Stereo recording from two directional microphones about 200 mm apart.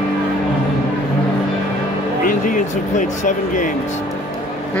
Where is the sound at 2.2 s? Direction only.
45° left (ahead or behind).